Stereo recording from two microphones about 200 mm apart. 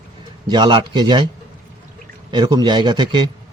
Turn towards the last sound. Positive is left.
turn(degrees=-20)  # may be behind; listen again after turning